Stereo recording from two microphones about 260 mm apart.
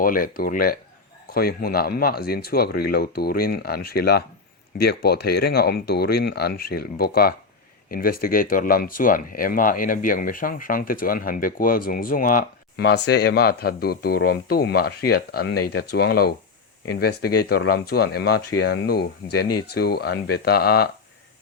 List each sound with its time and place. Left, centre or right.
0.0 s speech: left